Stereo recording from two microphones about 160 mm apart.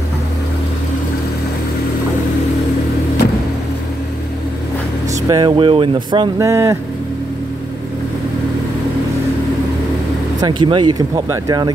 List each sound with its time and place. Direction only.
5.3 s speech: 30° right (ahead or behind)
6.4 s speech: 20° right (ahead or behind)
10.4 s speech: 30° right (ahead or behind)